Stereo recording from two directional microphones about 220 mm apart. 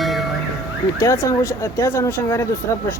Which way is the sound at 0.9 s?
15° left (ahead or behind).